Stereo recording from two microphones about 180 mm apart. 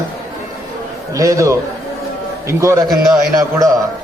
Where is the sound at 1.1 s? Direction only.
20° right (ahead or behind).